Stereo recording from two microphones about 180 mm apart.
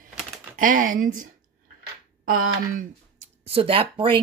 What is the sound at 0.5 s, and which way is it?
Speech, 50° right (ahead or behind).